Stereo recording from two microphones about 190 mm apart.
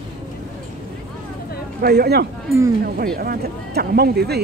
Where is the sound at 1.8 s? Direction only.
55° right (ahead or behind).